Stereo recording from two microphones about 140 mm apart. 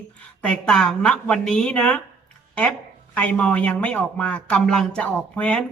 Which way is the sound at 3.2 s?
10° left (ahead or behind).